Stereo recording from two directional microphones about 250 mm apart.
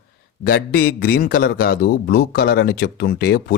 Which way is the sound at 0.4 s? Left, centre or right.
Left.